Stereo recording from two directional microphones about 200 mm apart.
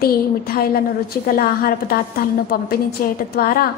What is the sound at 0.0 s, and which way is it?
A woman's voice, 50° left (ahead or behind).